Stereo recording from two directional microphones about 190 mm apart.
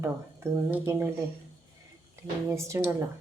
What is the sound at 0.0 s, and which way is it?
Speech, 10° right (ahead or behind).